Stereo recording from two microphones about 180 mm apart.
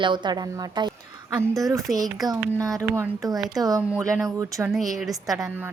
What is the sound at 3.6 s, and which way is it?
A woman's voice, 20° right (ahead or behind).